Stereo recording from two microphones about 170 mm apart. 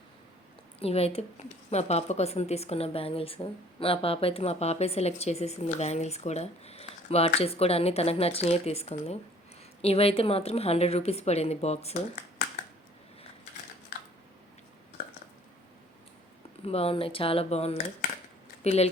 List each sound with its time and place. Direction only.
0.8 s a woman's voice: 35° left (ahead or behind)
16.6 s a woman's voice: 35° left (ahead or behind)